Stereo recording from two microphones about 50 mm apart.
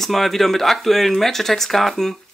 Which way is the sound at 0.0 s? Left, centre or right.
Centre.